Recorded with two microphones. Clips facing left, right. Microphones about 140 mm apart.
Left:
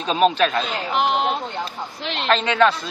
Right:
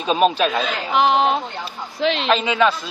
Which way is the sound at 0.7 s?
90° right.